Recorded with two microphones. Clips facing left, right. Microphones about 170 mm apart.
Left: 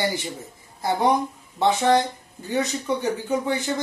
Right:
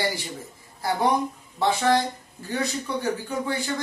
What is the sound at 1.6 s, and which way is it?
Speech, 20° left (ahead or behind).